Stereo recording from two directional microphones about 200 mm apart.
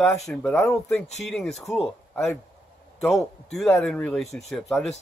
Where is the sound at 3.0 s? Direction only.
Centre (ahead or behind).